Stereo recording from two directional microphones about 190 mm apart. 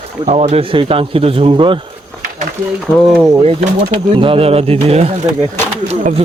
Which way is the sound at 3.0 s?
5° right (ahead or behind).